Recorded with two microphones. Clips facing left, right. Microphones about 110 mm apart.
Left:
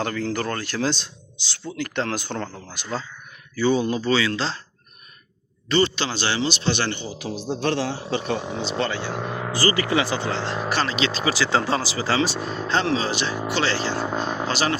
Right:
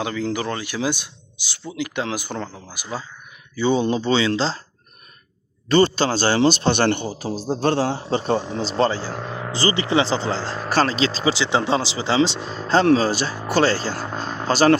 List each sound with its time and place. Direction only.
0.0 s speech: 10° right (ahead or behind)
3.5 s speech: 20° right (ahead or behind)
5.6 s speech: 45° right (ahead or behind)
9.0 s speech: 5° left (ahead or behind)
9.5 s speech: 25° right (ahead or behind)
12.6 s speech: 40° right (ahead or behind)
14.0 s speech: 5° left (ahead or behind)
14.4 s speech: 40° right (ahead or behind)